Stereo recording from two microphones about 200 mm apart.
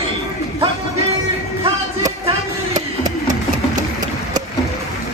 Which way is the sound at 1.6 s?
20° right (ahead or behind).